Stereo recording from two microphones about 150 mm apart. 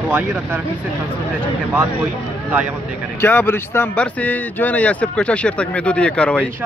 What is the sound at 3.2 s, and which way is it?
Speech, 15° left (ahead or behind).